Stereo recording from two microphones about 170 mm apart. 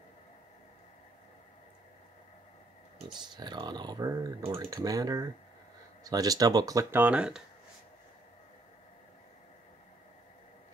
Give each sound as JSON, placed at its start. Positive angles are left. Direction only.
{"t": 3.1, "sound": "speech", "side_deg": -25}